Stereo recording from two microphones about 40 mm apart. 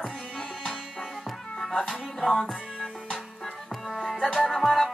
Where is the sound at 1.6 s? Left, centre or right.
Left.